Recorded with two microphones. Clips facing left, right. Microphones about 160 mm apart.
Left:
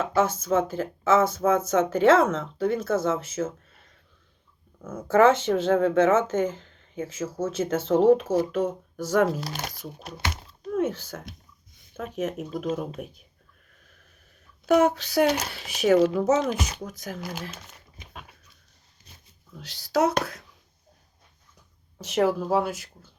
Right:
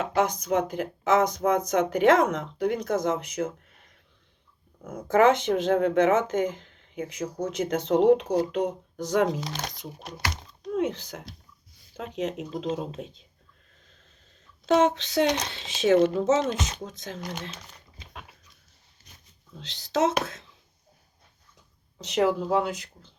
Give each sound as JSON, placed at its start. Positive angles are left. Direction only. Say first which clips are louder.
{"t": 0.0, "sound": "speech", "louder": "left 1 dB", "side_deg": -15}
{"t": 4.9, "sound": "speech", "louder": "left 1 dB", "side_deg": -15}
{"t": 9.4, "sound": "speech", "louder": "even", "side_deg": 5}
{"t": 10.3, "sound": "a sound", "louder": "even", "side_deg": 5}
{"t": 10.8, "sound": "speech", "louder": "left 1 dB", "side_deg": -15}
{"t": 13.8, "sound": "owl", "louder": "left 1 dB", "side_deg": -25}
{"t": 14.7, "sound": "speech", "louder": "left 1 dB", "side_deg": -20}
{"t": 15.3, "sound": "speech", "louder": "left 1 dB", "side_deg": 5}
{"t": 15.5, "sound": "speech", "louder": "even", "side_deg": -20}
{"t": 17.2, "sound": "speech", "louder": "right 2 dB", "side_deg": 5}
{"t": 19.5, "sound": "a child's voice", "louder": "left 2 dB", "side_deg": -20}
{"t": 22.0, "sound": "speech", "louder": "left 1 dB", "side_deg": -20}